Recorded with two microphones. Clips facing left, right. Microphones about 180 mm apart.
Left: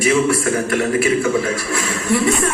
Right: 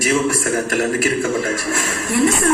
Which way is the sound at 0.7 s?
40° right (ahead or behind).